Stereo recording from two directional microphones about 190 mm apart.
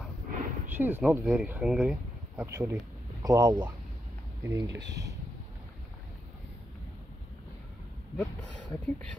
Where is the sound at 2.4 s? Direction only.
15° right (ahead or behind).